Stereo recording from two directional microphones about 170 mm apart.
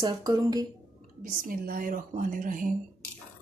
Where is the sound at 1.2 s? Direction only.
55° right (ahead or behind).